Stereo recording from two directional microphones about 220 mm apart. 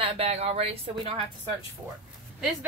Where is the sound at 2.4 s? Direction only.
5° right (ahead or behind).